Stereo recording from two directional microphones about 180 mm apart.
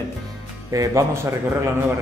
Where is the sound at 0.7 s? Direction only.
20° right (ahead or behind).